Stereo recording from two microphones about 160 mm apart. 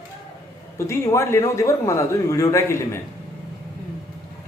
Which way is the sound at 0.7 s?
20° left (ahead or behind).